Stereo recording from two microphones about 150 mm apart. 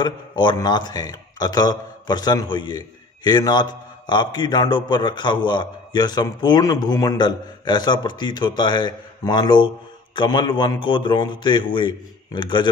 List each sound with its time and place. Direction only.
0.0 s a man's voice: 30° left (ahead or behind)